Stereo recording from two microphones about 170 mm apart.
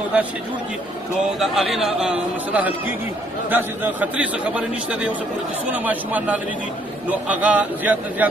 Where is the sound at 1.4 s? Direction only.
Centre (ahead or behind).